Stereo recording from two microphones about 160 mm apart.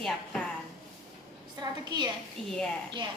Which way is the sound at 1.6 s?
25° right (ahead or behind).